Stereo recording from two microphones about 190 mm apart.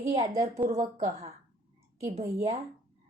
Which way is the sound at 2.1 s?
35° right (ahead or behind).